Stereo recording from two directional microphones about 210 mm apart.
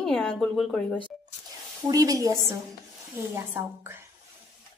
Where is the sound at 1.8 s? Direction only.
15° right (ahead or behind).